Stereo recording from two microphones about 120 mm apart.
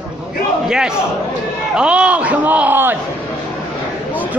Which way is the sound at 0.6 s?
5° right (ahead or behind).